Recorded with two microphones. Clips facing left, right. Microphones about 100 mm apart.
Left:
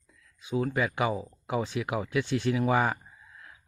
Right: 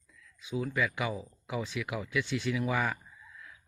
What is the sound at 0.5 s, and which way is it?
Speech, 40° left (ahead or behind).